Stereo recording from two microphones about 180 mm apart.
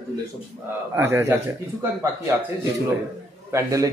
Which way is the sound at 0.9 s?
15° right (ahead or behind).